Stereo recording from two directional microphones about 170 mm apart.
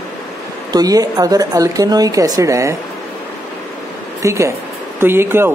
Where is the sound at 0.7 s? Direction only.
20° right (ahead or behind).